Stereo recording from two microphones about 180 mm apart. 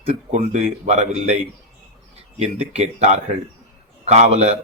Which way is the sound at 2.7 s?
35° right (ahead or behind).